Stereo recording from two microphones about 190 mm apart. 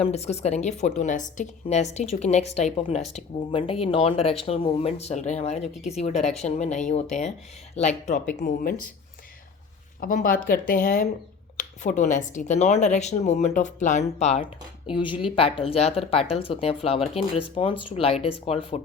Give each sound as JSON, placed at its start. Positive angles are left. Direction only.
{"t": 0.0, "sound": "speech", "side_deg": 35}
{"t": 10.0, "sound": "speech", "side_deg": 45}